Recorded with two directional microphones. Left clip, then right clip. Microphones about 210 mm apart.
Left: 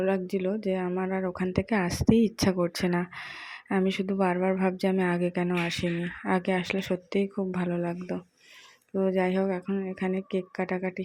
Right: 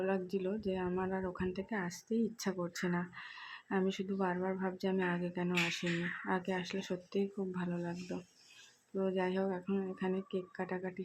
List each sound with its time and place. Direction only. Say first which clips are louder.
0.0 s speech: left 8 dB; 20° left (ahead or behind)